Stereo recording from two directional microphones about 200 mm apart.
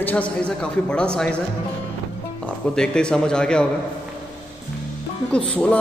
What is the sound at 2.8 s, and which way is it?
Speech, 5° left (ahead or behind).